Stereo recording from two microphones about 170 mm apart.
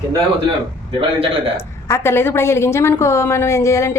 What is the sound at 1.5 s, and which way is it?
A woman's voice, 15° left (ahead or behind).